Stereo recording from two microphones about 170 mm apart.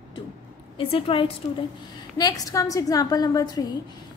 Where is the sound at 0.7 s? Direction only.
30° left (ahead or behind).